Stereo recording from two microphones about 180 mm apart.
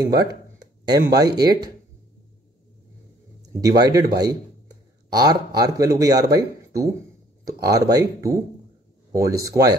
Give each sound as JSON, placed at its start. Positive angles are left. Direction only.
{"t": 0.0, "sound": "speech", "side_deg": -20}
{"t": 3.6, "sound": "speech", "side_deg": -20}
{"t": 5.1, "sound": "speech", "side_deg": -20}